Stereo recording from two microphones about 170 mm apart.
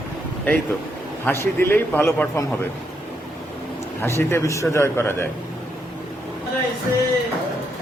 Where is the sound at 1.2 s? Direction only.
10° left (ahead or behind).